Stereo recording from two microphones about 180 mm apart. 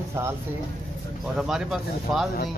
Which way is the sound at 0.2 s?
15° right (ahead or behind).